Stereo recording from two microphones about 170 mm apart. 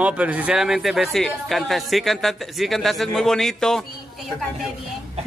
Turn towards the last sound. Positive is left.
turn(degrees=0)  # may be behind; listen again after turning